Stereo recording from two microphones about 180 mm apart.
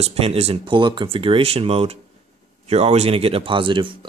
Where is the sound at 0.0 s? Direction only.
35° right (ahead or behind).